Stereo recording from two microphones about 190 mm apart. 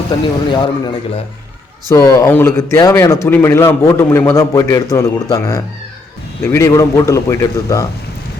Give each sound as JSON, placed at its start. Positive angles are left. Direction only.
{"t": 0.5, "sound": "a man's voice", "side_deg": 25}